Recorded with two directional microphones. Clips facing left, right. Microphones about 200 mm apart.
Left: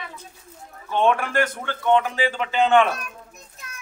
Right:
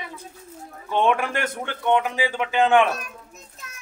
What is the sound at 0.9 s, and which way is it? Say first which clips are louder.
A man's voice: left 1 dB; 15° right (ahead or behind).